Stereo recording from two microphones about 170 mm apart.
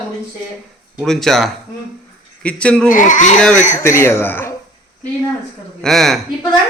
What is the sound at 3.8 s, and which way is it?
Speech, 15° left (ahead or behind).